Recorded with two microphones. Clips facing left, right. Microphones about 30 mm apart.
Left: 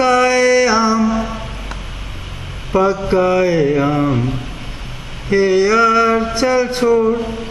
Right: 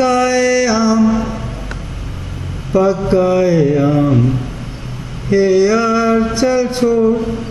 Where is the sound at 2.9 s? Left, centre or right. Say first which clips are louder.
Right 2 dB; centre.